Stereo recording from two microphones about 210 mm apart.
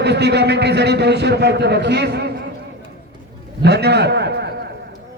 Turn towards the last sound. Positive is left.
turn(degrees=-50)  # may be behind; listen again after turning